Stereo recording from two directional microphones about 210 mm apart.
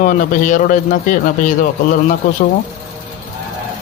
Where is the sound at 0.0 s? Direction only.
40° left (ahead or behind).